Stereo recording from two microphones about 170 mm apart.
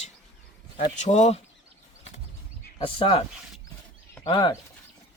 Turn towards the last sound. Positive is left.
turn(degrees=25)  # may be behind; listen again after turning